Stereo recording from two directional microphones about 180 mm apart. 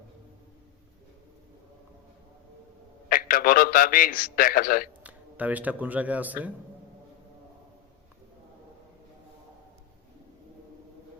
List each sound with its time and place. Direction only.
3.1 s a man's voice: 50° left (ahead or behind)
5.0 s speech: 10° right (ahead or behind)